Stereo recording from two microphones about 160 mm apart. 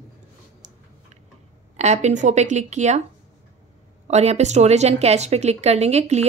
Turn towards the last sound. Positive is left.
turn(degrees=-45)  # may be behind; listen again after turning